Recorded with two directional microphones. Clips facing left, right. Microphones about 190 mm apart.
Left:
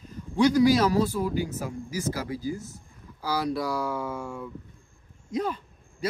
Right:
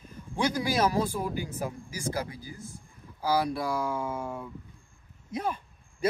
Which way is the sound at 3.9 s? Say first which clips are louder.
Left 1 dB; 90° left.